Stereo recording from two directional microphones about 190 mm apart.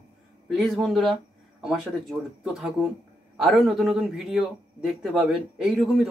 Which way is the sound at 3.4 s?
Centre (ahead or behind).